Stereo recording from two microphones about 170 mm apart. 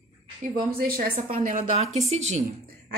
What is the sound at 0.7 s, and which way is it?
Speech, 60° right (ahead or behind).